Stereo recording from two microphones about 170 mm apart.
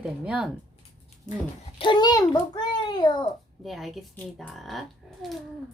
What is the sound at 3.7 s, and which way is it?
A woman's voice, centre (ahead or behind).